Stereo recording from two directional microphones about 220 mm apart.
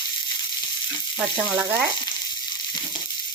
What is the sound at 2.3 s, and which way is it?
Water, 20° left (ahead or behind).